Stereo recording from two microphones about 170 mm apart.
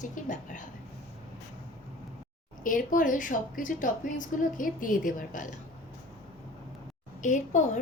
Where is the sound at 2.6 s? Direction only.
50° left (ahead or behind).